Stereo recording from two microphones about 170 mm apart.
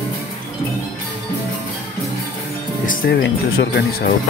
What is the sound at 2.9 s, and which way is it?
Speech, 65° left (ahead or behind).